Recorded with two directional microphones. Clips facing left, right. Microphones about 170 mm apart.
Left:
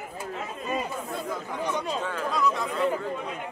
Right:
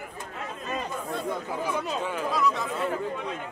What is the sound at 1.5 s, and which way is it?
Chatter, 5° right (ahead or behind).